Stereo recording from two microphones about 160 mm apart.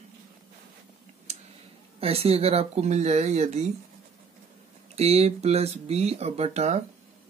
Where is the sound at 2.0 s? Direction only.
35° right (ahead or behind).